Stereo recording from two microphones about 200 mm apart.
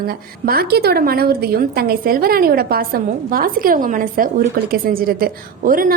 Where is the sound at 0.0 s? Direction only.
50° right (ahead or behind).